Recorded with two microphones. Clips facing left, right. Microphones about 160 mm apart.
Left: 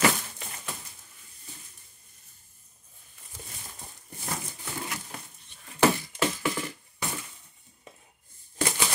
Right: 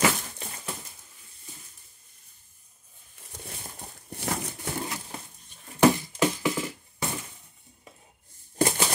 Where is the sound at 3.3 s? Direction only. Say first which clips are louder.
Right 3 dB; 70° right (ahead or behind).